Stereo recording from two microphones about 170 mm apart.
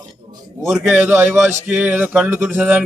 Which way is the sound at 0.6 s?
Centre (ahead or behind).